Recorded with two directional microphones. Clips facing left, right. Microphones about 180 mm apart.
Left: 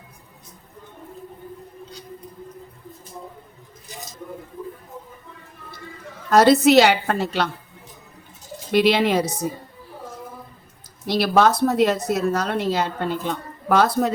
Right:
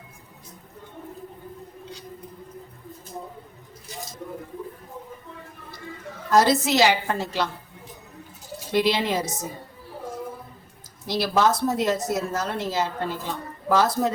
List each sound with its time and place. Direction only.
6.3 s a woman's voice: 65° left (ahead or behind)
8.7 s a woman's voice: 65° left (ahead or behind)
11.0 s a woman's voice: 65° left (ahead or behind)